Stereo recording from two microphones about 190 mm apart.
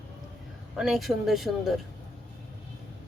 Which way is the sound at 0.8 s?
Centre (ahead or behind).